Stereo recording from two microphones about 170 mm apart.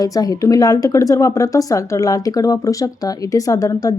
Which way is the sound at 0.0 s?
20° left (ahead or behind).